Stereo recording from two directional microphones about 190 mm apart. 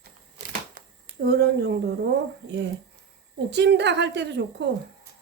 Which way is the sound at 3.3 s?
65° right (ahead or behind).